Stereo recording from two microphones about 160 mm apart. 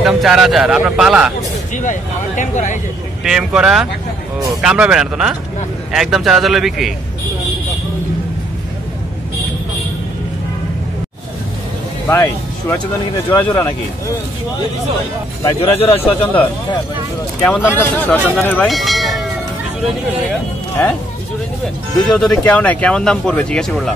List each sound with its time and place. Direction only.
0.0 s speech: 5° right (ahead or behind)
1.8 s speech: 50° left (ahead or behind)
3.3 s speech: 5° right (ahead or behind)
12.1 s speech: 15° left (ahead or behind)
13.4 s speech: 25° left (ahead or behind)
15.6 s speech: 35° left (ahead or behind)
17.4 s speech: 15° left (ahead or behind); by 19.2 s centre (ahead or behind)
22.0 s speech: 5° left (ahead or behind)